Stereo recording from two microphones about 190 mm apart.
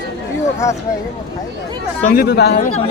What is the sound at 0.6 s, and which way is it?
Speech, 15° left (ahead or behind).